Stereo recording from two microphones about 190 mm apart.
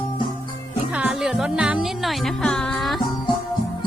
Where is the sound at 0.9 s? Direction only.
5° right (ahead or behind).